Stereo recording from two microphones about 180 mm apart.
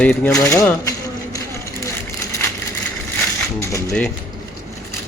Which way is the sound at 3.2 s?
15° left (ahead or behind).